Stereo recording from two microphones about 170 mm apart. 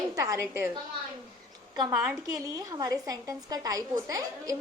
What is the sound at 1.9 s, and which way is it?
Speech, 5° right (ahead or behind).